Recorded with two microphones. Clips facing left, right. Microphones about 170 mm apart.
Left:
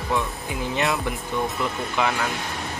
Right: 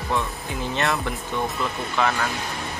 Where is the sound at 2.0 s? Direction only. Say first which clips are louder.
Right 1 dB; 15° left (ahead or behind).